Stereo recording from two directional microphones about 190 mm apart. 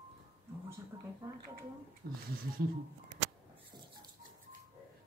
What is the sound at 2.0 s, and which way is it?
Speech, 55° right (ahead or behind).